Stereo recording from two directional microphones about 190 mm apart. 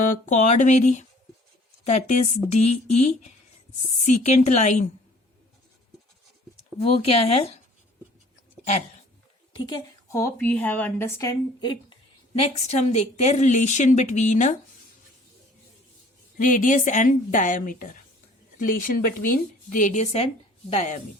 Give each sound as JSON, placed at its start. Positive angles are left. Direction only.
{"t": 0.0, "sound": "a woman's voice", "side_deg": 45}
{"t": 4.0, "sound": "a woman's voice", "side_deg": 35}
{"t": 6.7, "sound": "a woman's voice", "side_deg": 30}
{"t": 9.6, "sound": "a woman's voice", "side_deg": 20}
{"t": 16.4, "sound": "a woman's voice", "side_deg": 45}